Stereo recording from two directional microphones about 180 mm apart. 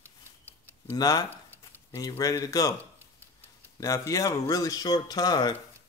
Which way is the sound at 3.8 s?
20° left (ahead or behind).